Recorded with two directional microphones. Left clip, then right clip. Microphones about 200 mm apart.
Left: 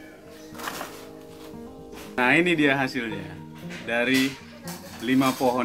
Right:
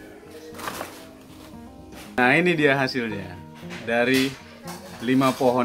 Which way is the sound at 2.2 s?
15° right (ahead or behind).